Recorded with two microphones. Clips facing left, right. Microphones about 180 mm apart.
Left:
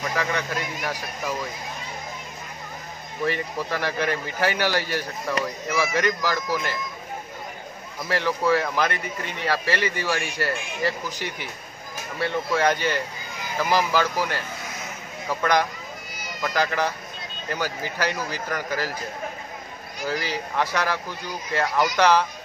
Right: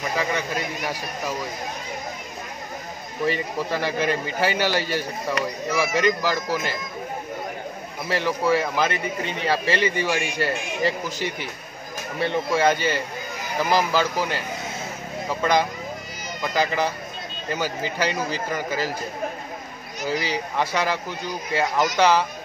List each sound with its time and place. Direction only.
3.3 s a man's voice: 15° right (ahead or behind)
8.1 s a man's voice: 15° right (ahead or behind)
11.1 s a man's voice: 15° left (ahead or behind)
12.2 s a man's voice: 15° right (ahead or behind)
20.1 s a man's voice: 15° right (ahead or behind)